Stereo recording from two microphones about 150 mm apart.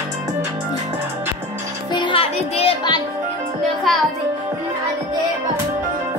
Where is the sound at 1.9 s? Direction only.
35° left (ahead or behind).